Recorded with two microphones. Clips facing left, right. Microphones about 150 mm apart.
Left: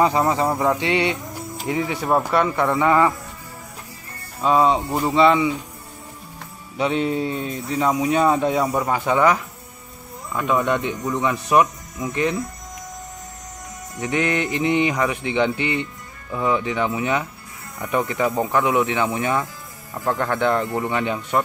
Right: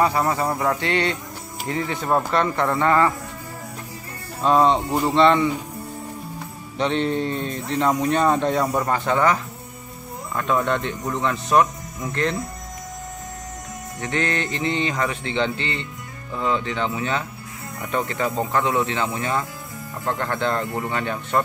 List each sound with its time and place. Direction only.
0.0 s speech: 20° left (ahead or behind)
4.4 s speech: 5° left (ahead or behind)
6.8 s speech: 5° left (ahead or behind)
14.0 s speech: 15° left (ahead or behind)